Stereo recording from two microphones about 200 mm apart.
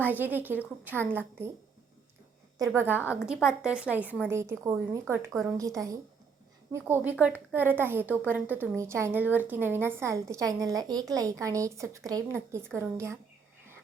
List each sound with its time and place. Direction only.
0.1 s a woman's voice: 10° right (ahead or behind)
2.6 s a woman's voice: 10° right (ahead or behind)